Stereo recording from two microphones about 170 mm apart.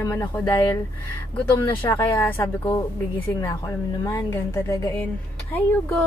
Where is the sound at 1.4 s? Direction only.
10° left (ahead or behind).